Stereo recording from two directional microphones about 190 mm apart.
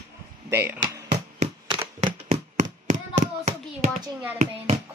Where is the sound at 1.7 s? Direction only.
25° right (ahead or behind).